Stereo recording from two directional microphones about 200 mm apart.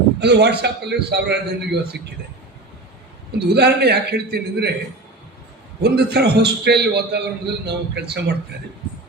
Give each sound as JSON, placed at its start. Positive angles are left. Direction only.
{"t": 0.2, "sound": "a man's voice", "side_deg": -55}
{"t": 3.3, "sound": "a man's voice", "side_deg": -55}
{"t": 5.8, "sound": "a man's voice", "side_deg": -55}